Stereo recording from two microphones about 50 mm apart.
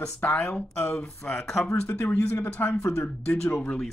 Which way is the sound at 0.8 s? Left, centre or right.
Left.